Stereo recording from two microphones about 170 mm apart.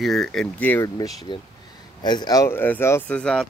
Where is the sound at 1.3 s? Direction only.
25° left (ahead or behind).